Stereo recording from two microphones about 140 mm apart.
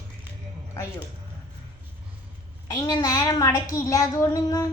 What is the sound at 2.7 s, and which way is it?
A woman's voice, 30° left (ahead or behind).